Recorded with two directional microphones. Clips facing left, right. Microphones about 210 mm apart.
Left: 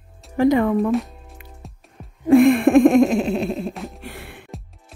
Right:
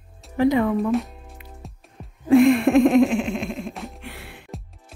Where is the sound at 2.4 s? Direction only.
50° left (ahead or behind); by 3.7 s 35° left (ahead or behind).